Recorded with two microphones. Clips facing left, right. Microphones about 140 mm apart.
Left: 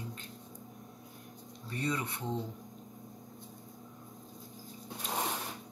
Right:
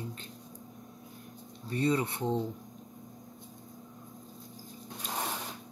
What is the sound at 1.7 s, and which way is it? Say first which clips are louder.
Speech: right 6 dB; 30° right (ahead or behind).